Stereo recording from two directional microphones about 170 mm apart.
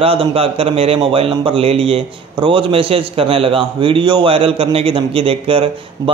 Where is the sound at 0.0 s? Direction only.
35° right (ahead or behind).